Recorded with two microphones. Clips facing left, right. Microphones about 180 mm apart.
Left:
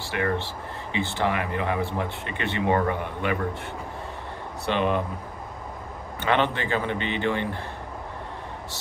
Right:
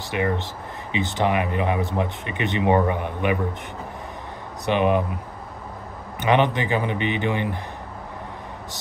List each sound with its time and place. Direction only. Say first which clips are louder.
0.1 s speech: right 2 dB; 15° right (ahead or behind)
4.6 s speech: right 4 dB; 15° right (ahead or behind)
6.2 s speech: right 4 dB; 15° right (ahead or behind)